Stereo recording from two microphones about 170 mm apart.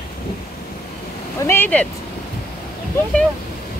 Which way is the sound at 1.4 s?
10° left (ahead or behind).